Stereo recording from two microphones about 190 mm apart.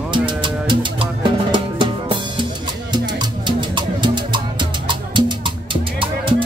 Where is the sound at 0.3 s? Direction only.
25° right (ahead or behind).